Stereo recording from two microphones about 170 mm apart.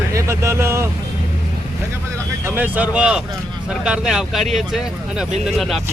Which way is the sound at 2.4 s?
10° right (ahead or behind).